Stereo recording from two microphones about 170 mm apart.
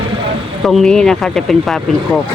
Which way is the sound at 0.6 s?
Centre (ahead or behind).